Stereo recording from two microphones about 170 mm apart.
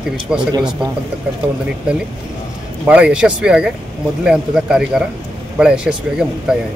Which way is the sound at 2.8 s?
5° right (ahead or behind).